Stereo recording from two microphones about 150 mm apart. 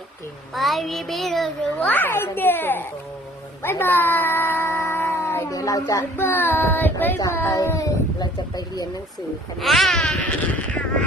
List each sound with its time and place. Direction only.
0.5 s speech: centre (ahead or behind); by 8.9 s 25° left (ahead or behind)
9.6 s speech: centre (ahead or behind)